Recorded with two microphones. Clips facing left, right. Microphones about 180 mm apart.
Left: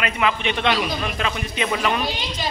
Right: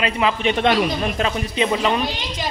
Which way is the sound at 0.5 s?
45° right (ahead or behind).